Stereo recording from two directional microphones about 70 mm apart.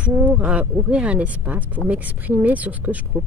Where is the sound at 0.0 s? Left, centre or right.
Right.